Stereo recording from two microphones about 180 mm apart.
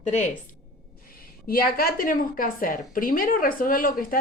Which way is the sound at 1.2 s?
55° left (ahead or behind).